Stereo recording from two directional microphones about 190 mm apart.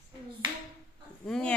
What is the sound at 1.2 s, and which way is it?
Speech, 5° left (ahead or behind).